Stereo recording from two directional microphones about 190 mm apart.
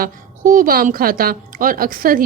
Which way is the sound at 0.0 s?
45° right (ahead or behind).